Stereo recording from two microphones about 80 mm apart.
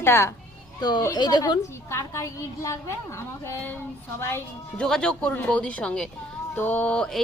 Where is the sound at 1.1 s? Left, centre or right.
Left.